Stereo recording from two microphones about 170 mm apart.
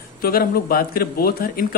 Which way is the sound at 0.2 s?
60° left (ahead or behind).